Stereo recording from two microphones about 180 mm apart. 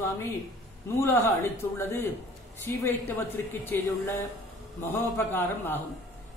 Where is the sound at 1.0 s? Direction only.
15° left (ahead or behind).